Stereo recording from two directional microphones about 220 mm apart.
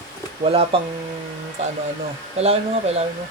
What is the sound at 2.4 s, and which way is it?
Speech, 30° right (ahead or behind).